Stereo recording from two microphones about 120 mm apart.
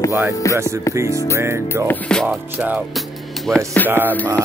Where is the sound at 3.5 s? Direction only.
10° left (ahead or behind).